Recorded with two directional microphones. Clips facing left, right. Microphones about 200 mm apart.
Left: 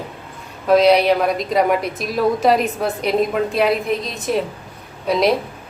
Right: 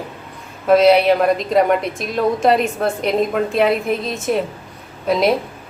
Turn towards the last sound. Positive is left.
turn(degrees=0)  # may be behind; listen again after turning